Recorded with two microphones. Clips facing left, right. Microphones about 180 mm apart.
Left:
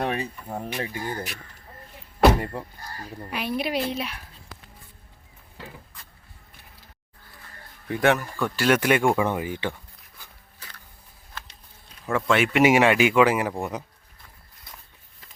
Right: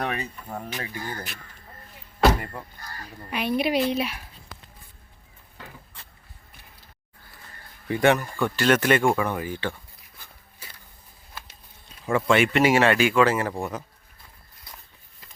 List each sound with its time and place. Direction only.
0.0 s speech: 30° left (ahead or behind)
0.4 s speech: 15° left (ahead or behind)
2.4 s speech: 30° left (ahead or behind)
3.2 s speech: centre (ahead or behind)
7.9 s speech: centre (ahead or behind)
9.1 s speech: 20° left (ahead or behind)
12.0 s speech: centre (ahead or behind)
12.5 s speech: 15° left (ahead or behind)